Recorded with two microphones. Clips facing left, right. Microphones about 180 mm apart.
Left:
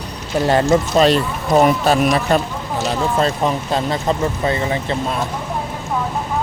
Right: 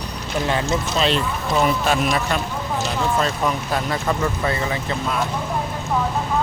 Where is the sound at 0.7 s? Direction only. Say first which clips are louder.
Left 8 dB; 45° left (ahead or behind); by 4.9 s 25° left (ahead or behind).